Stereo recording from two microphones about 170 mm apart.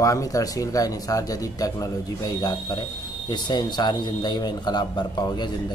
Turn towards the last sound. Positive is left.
turn(degrees=25)  # may be behind; listen again after turning